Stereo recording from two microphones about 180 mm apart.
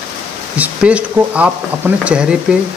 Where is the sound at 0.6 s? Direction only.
5° right (ahead or behind).